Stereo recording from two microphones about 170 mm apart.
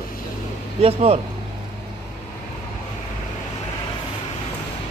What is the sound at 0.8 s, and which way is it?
Speech, 35° right (ahead or behind).